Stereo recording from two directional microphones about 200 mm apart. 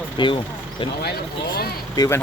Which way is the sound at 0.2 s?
25° left (ahead or behind).